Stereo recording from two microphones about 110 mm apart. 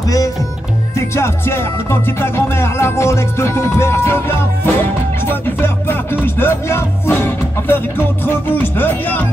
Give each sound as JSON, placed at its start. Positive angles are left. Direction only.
{"t": 0.9, "sound": "music", "side_deg": 25}
{"t": 8.3, "sound": "speech", "side_deg": 20}